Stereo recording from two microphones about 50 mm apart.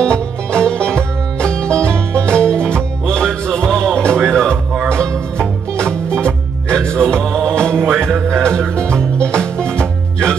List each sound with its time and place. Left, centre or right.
0.0 s music: centre